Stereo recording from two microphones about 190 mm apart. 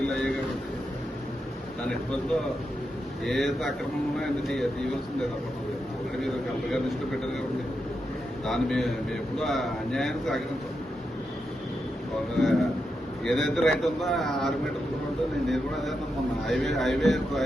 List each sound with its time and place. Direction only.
0.0 s a sound: 5° left (ahead or behind)
3.2 s a man's voice: centre (ahead or behind)
6.1 s a man's voice: centre (ahead or behind)
8.4 s a man's voice: centre (ahead or behind)
12.4 s a man's voice: centre (ahead or behind)